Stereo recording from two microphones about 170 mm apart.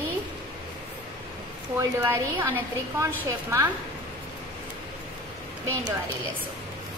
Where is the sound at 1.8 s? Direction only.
15° right (ahead or behind).